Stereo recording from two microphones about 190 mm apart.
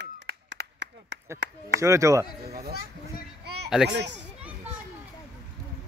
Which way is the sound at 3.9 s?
60° right (ahead or behind).